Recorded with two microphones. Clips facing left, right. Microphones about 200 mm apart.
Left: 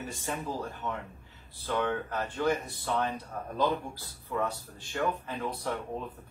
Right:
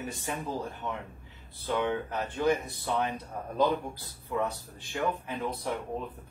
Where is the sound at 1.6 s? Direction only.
15° right (ahead or behind).